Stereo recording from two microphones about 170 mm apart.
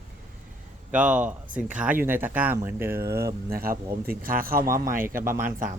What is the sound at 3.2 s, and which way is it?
Speech, 60° right (ahead or behind).